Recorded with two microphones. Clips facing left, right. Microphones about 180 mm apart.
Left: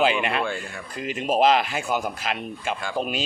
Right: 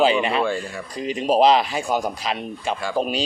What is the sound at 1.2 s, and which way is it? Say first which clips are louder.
Speech: right 3 dB; 35° right (ahead or behind).